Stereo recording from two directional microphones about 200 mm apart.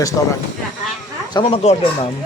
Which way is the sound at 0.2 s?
20° left (ahead or behind).